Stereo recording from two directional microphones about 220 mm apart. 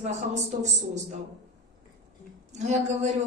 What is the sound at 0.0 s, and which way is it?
Speech, 30° right (ahead or behind).